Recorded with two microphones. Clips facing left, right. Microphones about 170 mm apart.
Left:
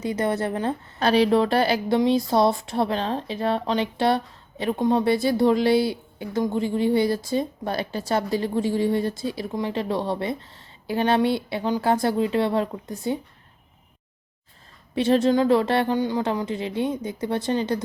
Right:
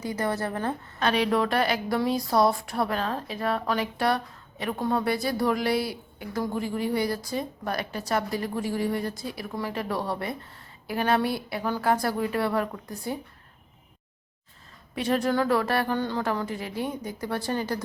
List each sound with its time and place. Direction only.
0.0 s speech: 25° left (ahead or behind)
0.9 s a woman's voice: 35° left (ahead or behind)
14.9 s speech: 30° left (ahead or behind)